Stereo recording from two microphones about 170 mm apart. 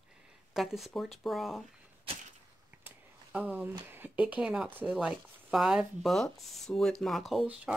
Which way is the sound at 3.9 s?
10° right (ahead or behind).